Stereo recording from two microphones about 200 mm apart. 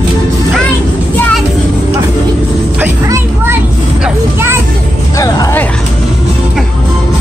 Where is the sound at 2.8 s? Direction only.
15° right (ahead or behind).